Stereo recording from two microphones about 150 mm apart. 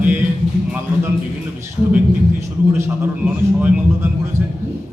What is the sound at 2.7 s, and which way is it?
Speech, 15° right (ahead or behind).